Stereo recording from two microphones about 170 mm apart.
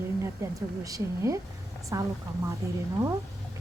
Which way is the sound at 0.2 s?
20° right (ahead or behind).